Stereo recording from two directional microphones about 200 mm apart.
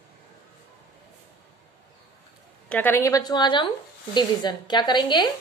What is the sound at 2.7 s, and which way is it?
Speech, 10° left (ahead or behind).